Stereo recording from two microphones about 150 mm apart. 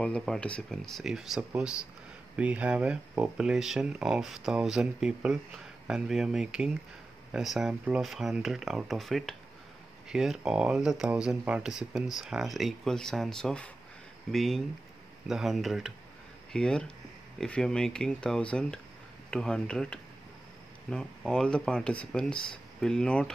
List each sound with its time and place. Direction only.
0.0 s speech: 5° left (ahead or behind)